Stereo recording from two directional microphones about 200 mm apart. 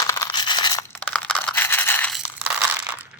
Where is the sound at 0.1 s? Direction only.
20° left (ahead or behind).